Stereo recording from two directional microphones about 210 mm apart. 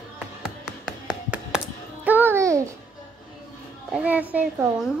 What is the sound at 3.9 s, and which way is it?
Child singing, 5° right (ahead or behind).